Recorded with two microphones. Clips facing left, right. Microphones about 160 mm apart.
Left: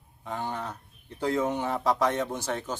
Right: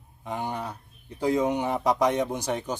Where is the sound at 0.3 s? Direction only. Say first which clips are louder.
Right 2 dB; 15° right (ahead or behind).